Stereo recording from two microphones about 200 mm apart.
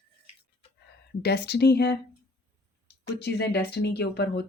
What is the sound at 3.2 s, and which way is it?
Speech, 55° left (ahead or behind).